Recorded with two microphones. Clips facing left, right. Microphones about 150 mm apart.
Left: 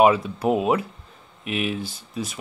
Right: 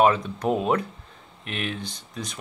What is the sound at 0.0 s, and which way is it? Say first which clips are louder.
Speech: left 3 dB; 10° left (ahead or behind).